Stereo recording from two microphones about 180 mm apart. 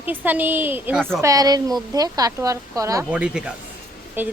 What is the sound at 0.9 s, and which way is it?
Speech, centre (ahead or behind).